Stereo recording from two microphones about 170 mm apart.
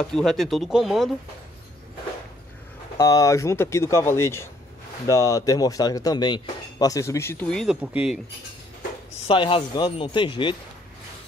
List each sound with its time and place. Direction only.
0.0 s speech: 5° left (ahead or behind)
3.0 s speech: 20° left (ahead or behind); by 8.2 s 5° right (ahead or behind)
9.3 s speech: 30° left (ahead or behind)